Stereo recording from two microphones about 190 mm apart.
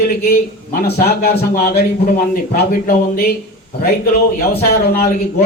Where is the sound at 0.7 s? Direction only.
55° left (ahead or behind).